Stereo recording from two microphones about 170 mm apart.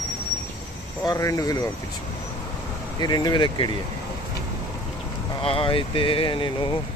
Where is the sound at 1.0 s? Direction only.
20° left (ahead or behind).